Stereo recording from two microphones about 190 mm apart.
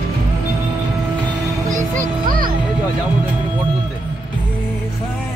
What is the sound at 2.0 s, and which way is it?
Music, 45° right (ahead or behind).